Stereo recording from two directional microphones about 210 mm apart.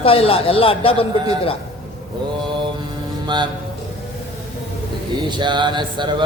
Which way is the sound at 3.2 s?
20° right (ahead or behind).